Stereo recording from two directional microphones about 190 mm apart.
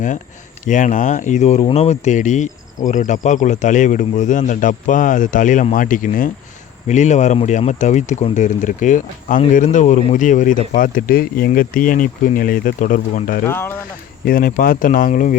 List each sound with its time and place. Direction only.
0.6 s speech: 40° left (ahead or behind)
13.4 s speech: 10° left (ahead or behind)
14.3 s speech: 50° left (ahead or behind)